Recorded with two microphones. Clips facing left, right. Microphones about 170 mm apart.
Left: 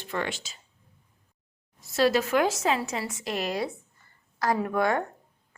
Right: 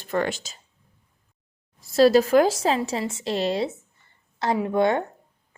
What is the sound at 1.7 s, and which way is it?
A woman's voice, 35° right (ahead or behind).